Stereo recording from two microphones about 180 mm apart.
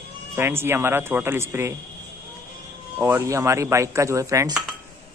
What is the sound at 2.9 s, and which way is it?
Speech, 10° right (ahead or behind).